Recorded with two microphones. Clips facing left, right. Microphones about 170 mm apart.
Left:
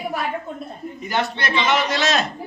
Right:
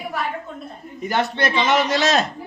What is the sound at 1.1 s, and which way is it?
A man's voice, 50° right (ahead or behind).